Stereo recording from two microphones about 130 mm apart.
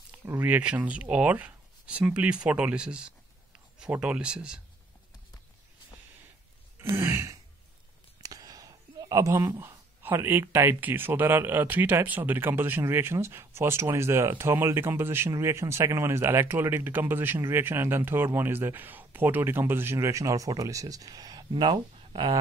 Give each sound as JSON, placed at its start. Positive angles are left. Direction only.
{"t": 0.1, "sound": "speech", "side_deg": -15}
{"t": 6.8, "sound": "throat clearing", "side_deg": -20}
{"t": 8.2, "sound": "speech", "side_deg": -30}